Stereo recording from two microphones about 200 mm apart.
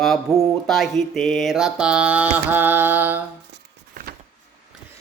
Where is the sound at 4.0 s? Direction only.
45° right (ahead or behind).